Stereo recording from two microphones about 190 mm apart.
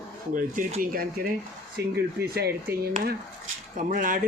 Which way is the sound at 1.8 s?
60° right (ahead or behind).